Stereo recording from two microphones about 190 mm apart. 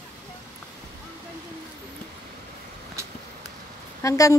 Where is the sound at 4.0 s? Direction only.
15° left (ahead or behind).